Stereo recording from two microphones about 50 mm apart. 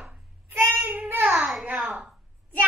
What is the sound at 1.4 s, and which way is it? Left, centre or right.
Speech, centre.